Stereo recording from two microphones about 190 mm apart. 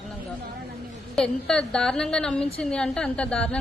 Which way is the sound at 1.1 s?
5° left (ahead or behind).